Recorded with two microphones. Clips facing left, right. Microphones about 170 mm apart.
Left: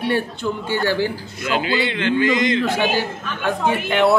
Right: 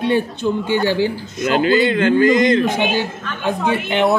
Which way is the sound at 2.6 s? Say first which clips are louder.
Right 2 dB; 20° right (ahead or behind).